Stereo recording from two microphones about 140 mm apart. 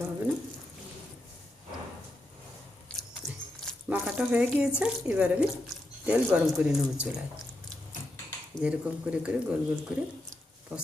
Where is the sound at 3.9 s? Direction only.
10° right (ahead or behind).